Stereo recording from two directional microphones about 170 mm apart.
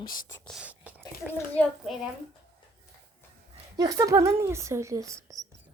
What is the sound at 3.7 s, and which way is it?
Speech, 20° right (ahead or behind).